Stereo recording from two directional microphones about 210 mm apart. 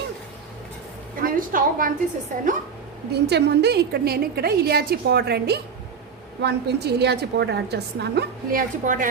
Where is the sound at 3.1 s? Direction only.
55° right (ahead or behind).